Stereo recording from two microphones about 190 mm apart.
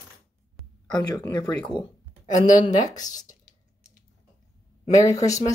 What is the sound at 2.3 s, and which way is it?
Speech, 40° left (ahead or behind).